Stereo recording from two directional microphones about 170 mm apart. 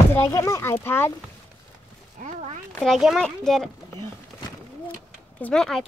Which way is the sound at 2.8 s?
Centre (ahead or behind).